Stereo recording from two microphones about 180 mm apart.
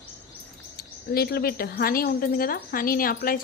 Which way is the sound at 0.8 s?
60° left (ahead or behind).